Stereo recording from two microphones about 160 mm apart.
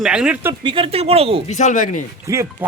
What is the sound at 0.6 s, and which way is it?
Speech, 35° right (ahead or behind).